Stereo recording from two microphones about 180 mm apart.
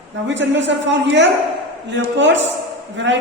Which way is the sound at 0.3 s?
90° right.